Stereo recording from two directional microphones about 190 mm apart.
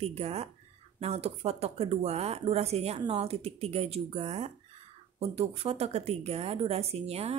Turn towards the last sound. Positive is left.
turn(degrees=-35)  # may be behind; listen again after turning